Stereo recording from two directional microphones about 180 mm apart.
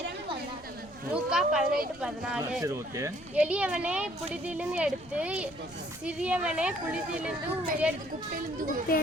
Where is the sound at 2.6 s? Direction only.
15° right (ahead or behind).